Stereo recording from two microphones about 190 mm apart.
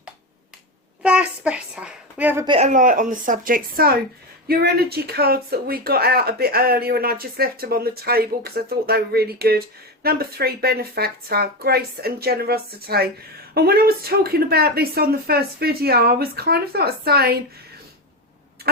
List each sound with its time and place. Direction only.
1.0 s a sound: 5° right (ahead or behind)
2.4 s a man's voice: 25° right (ahead or behind)
2.6 s speech: 45° right (ahead or behind)